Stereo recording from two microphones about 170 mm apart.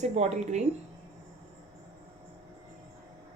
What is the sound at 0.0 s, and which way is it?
Speech, 40° right (ahead or behind).